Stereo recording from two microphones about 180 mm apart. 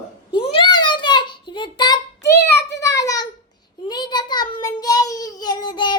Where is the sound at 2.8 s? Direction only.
15° left (ahead or behind).